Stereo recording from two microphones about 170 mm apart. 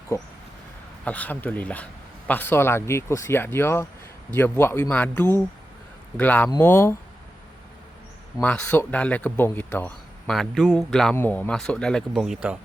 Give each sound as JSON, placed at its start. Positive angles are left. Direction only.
{"t": 0.1, "sound": "a man's voice", "side_deg": 15}
{"t": 8.4, "sound": "a man's voice", "side_deg": 10}